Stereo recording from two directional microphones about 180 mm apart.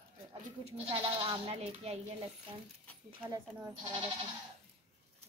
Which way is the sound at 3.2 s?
20° right (ahead or behind).